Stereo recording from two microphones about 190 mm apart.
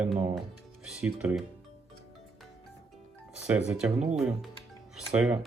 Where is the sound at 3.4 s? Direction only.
5° right (ahead or behind).